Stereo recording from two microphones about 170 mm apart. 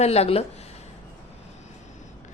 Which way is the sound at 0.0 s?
40° left (ahead or behind).